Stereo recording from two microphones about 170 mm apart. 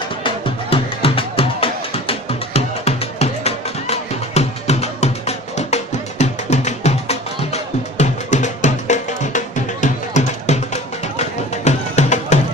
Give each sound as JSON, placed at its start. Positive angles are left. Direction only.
{"t": 0.2, "sound": "music", "side_deg": 30}